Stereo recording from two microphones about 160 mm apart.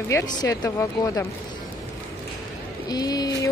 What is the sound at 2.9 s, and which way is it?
Speech, 25° left (ahead or behind).